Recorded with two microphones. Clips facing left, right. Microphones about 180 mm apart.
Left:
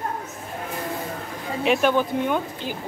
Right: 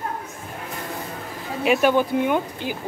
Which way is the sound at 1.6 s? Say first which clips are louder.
Right 2 dB; 5° right (ahead or behind).